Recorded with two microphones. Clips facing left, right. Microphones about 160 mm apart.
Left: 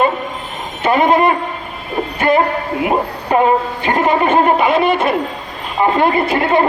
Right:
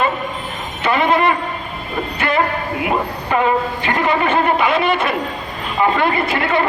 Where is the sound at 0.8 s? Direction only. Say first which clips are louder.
Left 3 dB; 45° left (ahead or behind).